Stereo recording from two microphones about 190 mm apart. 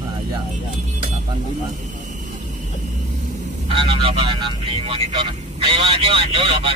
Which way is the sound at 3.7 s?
30° right (ahead or behind).